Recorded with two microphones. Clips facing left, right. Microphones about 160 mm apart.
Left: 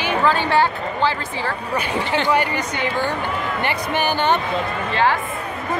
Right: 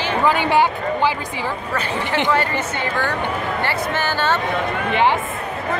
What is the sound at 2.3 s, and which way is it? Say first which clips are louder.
Speech: even; 15° left (ahead or behind).